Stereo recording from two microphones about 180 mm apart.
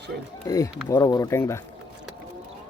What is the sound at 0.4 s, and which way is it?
Speech, 15° left (ahead or behind).